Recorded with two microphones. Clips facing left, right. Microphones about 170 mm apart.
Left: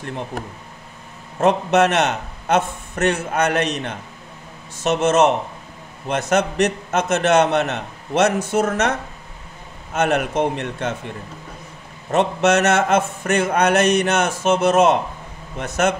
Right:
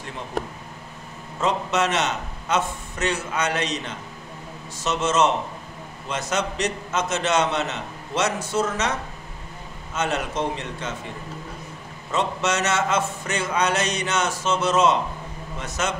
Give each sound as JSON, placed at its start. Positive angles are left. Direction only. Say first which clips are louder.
{"t": 1.4, "sound": "a man's voice", "louder": "left 7 dB", "side_deg": 60}
{"t": 9.9, "sound": "a man's voice", "louder": "left 6 dB", "side_deg": 60}
{"t": 12.1, "sound": "a man's voice", "louder": "left 7 dB", "side_deg": 60}